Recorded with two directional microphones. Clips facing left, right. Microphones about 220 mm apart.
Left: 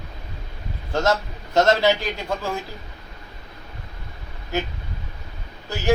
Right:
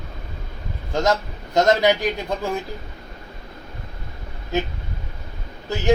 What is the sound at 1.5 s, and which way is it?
Speech, 15° right (ahead or behind).